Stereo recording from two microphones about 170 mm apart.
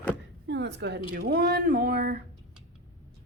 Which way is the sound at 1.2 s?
65° right (ahead or behind).